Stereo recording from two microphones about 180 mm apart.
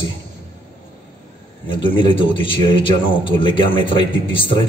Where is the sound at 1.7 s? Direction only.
30° left (ahead or behind).